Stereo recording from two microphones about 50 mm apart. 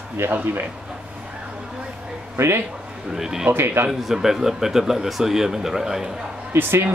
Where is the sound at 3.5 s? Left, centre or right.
Right.